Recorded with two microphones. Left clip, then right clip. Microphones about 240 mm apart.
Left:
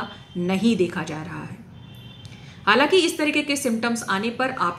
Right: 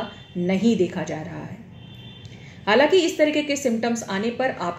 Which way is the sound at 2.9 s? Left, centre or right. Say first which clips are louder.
Right 1 dB; left.